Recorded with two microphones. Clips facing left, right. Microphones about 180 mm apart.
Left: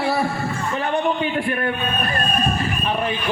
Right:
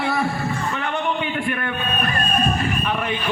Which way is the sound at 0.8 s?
35° left (ahead or behind).